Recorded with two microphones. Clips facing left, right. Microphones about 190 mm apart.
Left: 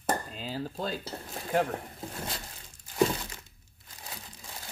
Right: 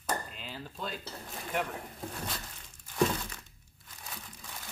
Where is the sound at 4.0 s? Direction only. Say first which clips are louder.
Left 1 dB; 30° left (ahead or behind).